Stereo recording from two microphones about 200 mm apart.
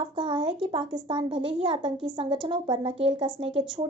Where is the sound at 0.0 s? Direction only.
25° right (ahead or behind).